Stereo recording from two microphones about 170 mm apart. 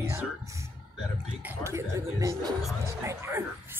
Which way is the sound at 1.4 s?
15° right (ahead or behind).